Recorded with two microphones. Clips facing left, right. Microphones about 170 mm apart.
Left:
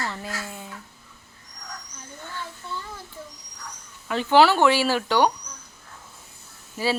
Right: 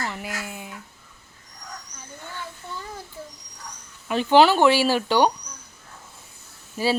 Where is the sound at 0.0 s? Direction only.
15° right (ahead or behind).